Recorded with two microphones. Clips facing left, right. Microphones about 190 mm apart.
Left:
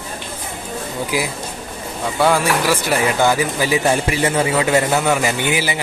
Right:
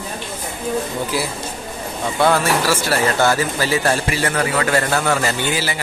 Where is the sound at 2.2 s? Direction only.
10° left (ahead or behind).